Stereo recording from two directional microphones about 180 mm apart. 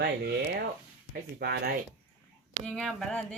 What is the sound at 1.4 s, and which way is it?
Speech, 65° right (ahead or behind).